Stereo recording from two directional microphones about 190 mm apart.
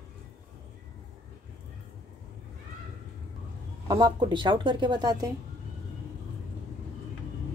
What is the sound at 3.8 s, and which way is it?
Speech, 20° right (ahead or behind).